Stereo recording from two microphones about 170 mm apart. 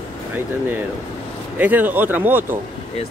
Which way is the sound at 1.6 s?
10° right (ahead or behind).